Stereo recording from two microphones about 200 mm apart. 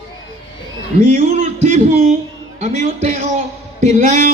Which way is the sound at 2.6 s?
35° right (ahead or behind).